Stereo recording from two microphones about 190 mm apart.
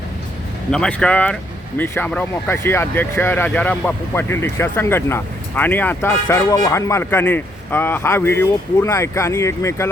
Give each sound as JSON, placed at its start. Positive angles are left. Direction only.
{"t": 0.7, "sound": "speech", "side_deg": 5}